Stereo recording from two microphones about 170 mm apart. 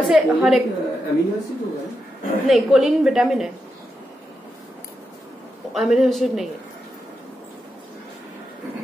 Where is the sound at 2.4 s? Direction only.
Centre (ahead or behind).